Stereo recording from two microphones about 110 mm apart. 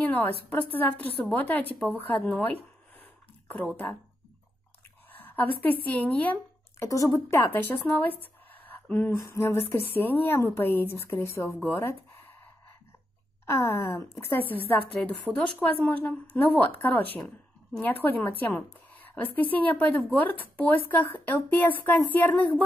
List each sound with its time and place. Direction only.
0.0 s a sound: 15° left (ahead or behind)
0.8 s a woman's voice: 15° left (ahead or behind)
3.5 s a woman's voice: 15° left (ahead or behind)
5.1 s speech: 15° left (ahead or behind)
6.9 s speech: 30° left (ahead or behind)
13.5 s speech: 25° left (ahead or behind)
15.0 s a woman's voice: 10° left (ahead or behind)